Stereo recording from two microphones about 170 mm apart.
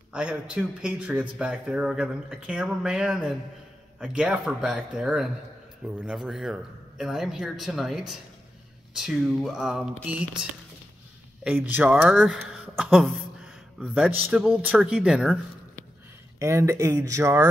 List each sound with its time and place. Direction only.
0.1 s a man's voice: 5° right (ahead or behind)
11.4 s speech: 10° right (ahead or behind)
16.3 s speech: 15° right (ahead or behind)